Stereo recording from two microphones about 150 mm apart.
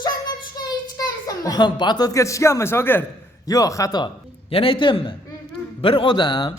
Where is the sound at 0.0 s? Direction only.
25° left (ahead or behind).